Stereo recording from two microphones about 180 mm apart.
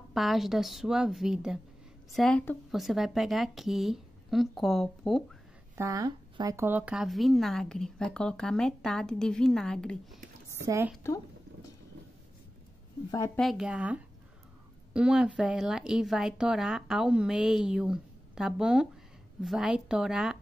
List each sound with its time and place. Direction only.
0.1 s speech: centre (ahead or behind)
5.8 s speech: 20° right (ahead or behind); by 10.2 s 5° left (ahead or behind)
10.6 s speech: 15° right (ahead or behind)
13.4 s speech: centre (ahead or behind)